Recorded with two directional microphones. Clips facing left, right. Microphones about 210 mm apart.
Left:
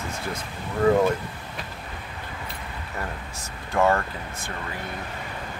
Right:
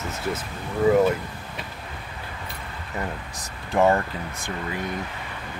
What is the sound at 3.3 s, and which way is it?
Speech, 15° right (ahead or behind).